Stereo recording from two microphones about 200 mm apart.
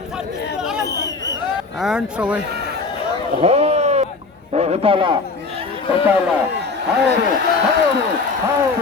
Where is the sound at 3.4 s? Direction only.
30° right (ahead or behind).